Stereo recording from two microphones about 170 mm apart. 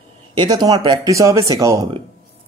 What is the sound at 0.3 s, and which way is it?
A man's voice, 25° right (ahead or behind).